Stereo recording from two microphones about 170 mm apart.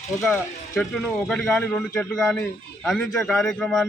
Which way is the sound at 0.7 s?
Centre (ahead or behind).